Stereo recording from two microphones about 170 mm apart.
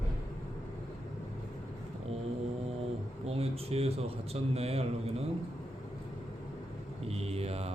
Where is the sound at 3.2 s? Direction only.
35° right (ahead or behind).